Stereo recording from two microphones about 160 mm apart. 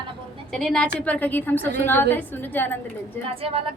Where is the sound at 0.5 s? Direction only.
5° left (ahead or behind).